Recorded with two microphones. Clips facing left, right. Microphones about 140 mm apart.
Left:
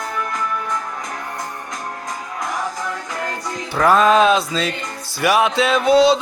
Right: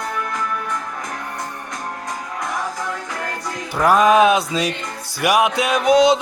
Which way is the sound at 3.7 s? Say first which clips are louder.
Even; 10° right (ahead or behind).